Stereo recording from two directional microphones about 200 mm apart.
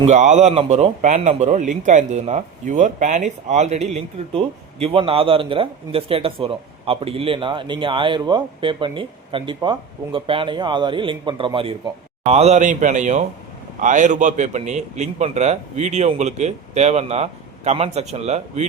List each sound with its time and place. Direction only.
0.0 s a man's voice: 35° right (ahead or behind)